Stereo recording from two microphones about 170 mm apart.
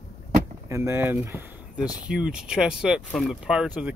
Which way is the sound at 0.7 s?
15° right (ahead or behind).